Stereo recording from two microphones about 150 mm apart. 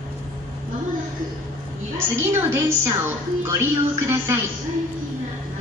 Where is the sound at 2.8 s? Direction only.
15° right (ahead or behind).